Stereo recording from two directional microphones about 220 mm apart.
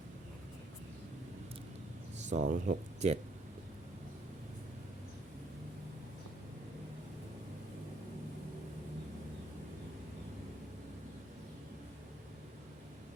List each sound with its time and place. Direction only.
2.3 s speech: 35° right (ahead or behind)